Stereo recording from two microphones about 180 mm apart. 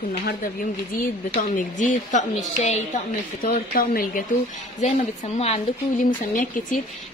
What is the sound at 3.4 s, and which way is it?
Speech, 50° left (ahead or behind).